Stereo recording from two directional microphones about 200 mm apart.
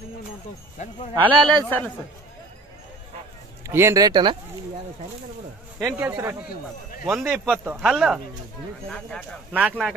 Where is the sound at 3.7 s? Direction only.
15° right (ahead or behind).